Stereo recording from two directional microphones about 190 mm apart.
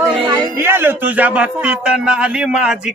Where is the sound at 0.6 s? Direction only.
10° right (ahead or behind).